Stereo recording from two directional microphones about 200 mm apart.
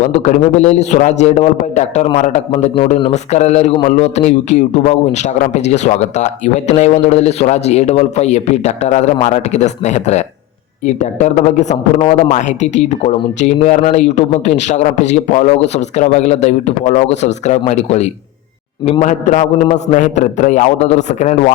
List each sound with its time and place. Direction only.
0.0 s a man's voice: 35° left (ahead or behind)